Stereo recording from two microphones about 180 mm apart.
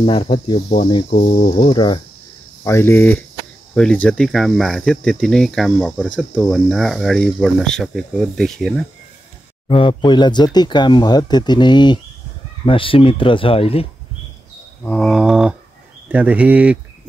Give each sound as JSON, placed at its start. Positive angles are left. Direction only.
{"t": 0.0, "sound": "speech", "side_deg": 30}
{"t": 1.1, "sound": "speech", "side_deg": 45}
{"t": 1.7, "sound": "speech", "side_deg": 30}
{"t": 2.6, "sound": "speech", "side_deg": 15}
{"t": 9.7, "sound": "speech", "side_deg": 30}
{"t": 14.8, "sound": "speech", "side_deg": 5}